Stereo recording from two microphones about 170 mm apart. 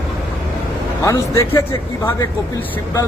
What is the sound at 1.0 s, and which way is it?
Speech, 15° left (ahead or behind).